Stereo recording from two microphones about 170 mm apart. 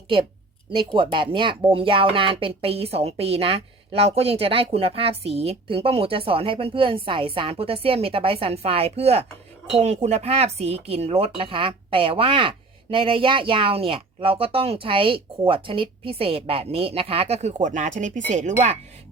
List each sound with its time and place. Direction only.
0.9 s speech: 30° right (ahead or behind)